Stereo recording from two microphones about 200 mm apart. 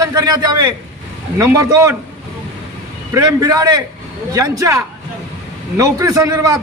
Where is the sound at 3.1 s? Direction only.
20° right (ahead or behind).